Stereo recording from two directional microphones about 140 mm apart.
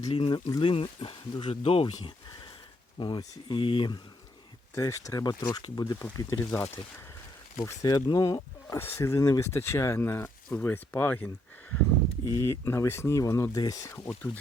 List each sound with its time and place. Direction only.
0.0 s speech: 40° left (ahead or behind)
2.0 s a sound: 35° left (ahead or behind)
3.0 s speech: 35° left (ahead or behind)
4.7 s speech: 25° left (ahead or behind)